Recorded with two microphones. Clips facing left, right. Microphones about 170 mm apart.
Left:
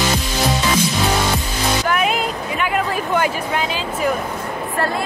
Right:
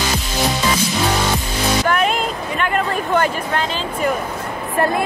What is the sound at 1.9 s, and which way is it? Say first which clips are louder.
Music: right 1 dB; 5° left (ahead or behind).